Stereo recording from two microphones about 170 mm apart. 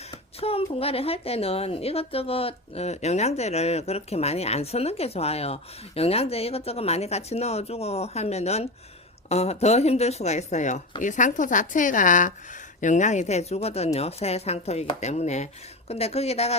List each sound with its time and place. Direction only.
0.1 s a woman's voice: 35° left (ahead or behind)